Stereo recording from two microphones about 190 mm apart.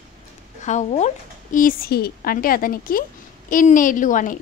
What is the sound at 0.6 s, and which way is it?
Speech, 40° left (ahead or behind).